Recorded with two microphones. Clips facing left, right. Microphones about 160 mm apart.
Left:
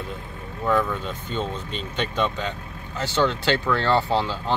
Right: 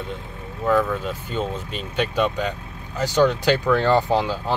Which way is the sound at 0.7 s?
5° right (ahead or behind).